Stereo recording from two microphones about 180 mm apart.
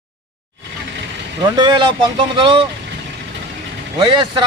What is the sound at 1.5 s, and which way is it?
A man's voice, 25° right (ahead or behind).